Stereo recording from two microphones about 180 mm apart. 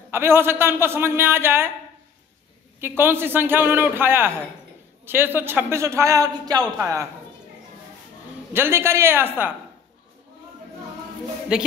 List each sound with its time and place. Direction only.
0.1 s a man's voice: 15° right (ahead or behind)
3.0 s a man's voice: 10° right (ahead or behind)
8.5 s a man's voice: 15° right (ahead or behind)
11.5 s speech: 5° right (ahead or behind)